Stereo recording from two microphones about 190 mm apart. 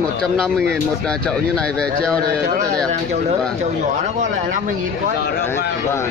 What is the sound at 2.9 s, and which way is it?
Speech, 35° right (ahead or behind).